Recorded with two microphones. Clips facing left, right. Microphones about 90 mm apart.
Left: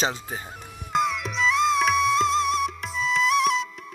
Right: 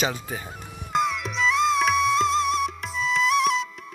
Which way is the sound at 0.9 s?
Centre (ahead or behind).